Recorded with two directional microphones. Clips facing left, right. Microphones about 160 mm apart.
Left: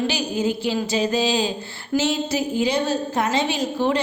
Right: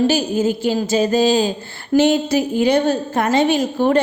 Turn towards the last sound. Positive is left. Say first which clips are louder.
# right 5 dB
turn(degrees=-50)  # may be behind; listen again after turning